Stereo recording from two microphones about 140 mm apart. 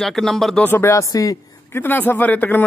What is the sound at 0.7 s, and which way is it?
A man's voice, 20° left (ahead or behind).